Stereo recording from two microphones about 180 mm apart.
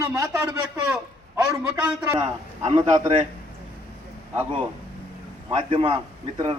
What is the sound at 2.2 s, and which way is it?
Speech, 35° right (ahead or behind).